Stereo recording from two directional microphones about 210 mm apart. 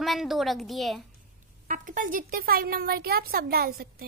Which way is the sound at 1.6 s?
40° right (ahead or behind).